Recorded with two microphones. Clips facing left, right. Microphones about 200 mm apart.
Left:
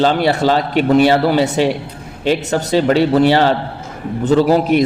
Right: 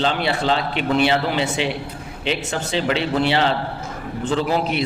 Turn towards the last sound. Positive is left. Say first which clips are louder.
# left 9 dB
turn(degrees=45)  # may be behind; listen again after turning